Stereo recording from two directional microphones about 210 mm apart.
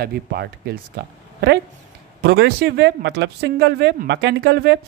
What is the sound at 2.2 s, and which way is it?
A woman's voice, 50° right (ahead or behind).